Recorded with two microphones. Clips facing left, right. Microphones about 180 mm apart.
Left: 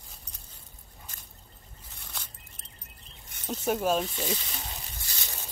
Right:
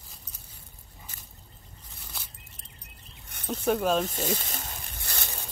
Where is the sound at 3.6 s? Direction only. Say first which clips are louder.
Right 2 dB; 5° left (ahead or behind).